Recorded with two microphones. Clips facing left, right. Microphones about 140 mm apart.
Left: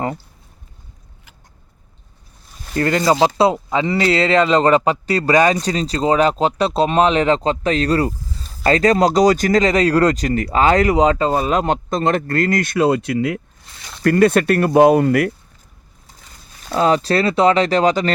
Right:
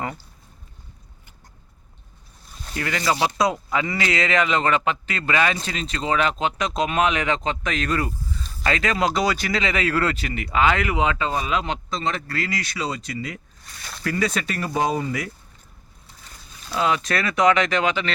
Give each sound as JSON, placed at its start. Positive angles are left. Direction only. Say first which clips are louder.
{"t": 2.7, "sound": "speech", "louder": "left 8 dB", "side_deg": 40}
{"t": 3.3, "sound": "speech", "louder": "left 6 dB", "side_deg": 25}
{"t": 13.7, "sound": "a sound", "louder": "even", "side_deg": 20}
{"t": 14.0, "sound": "speech", "louder": "left 11 dB", "side_deg": 55}
{"t": 16.7, "sound": "speech", "louder": "left 7 dB", "side_deg": 35}